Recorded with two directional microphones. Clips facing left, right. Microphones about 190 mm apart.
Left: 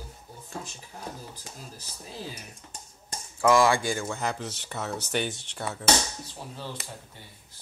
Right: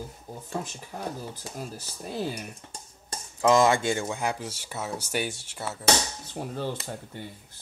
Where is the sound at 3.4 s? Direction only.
20° right (ahead or behind); by 5.8 s 5° right (ahead or behind).